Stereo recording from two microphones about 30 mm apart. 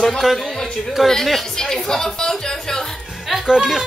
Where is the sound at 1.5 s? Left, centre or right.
Centre.